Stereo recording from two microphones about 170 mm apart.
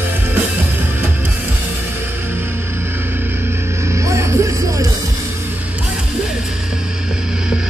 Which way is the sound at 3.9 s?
15° right (ahead or behind).